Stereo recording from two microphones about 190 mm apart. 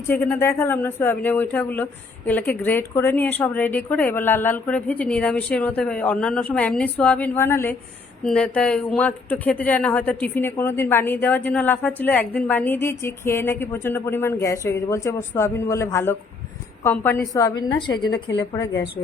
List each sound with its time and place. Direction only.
0.3 s a woman's voice: 10° left (ahead or behind)
18.6 s a woman's voice: 75° left (ahead or behind)